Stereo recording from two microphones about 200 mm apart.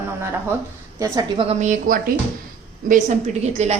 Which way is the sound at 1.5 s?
35° right (ahead or behind).